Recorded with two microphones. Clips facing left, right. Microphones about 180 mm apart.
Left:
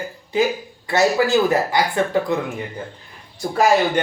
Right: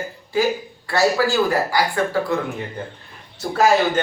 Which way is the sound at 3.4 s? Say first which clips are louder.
Even; 15° left (ahead or behind).